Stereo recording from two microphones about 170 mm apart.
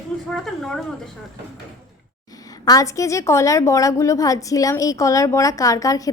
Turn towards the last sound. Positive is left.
turn(degrees=20)  # may be behind; listen again after turning